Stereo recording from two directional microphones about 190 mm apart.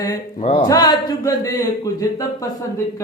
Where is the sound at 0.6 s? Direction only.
20° left (ahead or behind).